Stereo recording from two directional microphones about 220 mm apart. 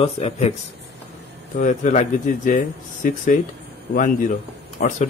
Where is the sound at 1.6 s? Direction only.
35° left (ahead or behind).